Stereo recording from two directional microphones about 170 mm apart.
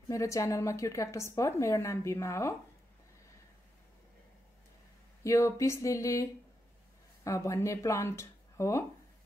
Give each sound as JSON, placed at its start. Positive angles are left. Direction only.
{"t": 0.1, "sound": "a woman's voice", "side_deg": 20}
{"t": 5.2, "sound": "a woman's voice", "side_deg": 20}
{"t": 7.2, "sound": "speech", "side_deg": 15}